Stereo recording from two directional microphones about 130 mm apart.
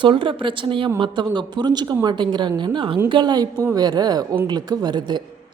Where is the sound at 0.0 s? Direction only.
40° right (ahead or behind).